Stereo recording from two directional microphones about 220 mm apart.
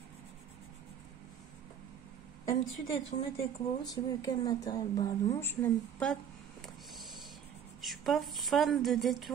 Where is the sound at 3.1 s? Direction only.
30° left (ahead or behind).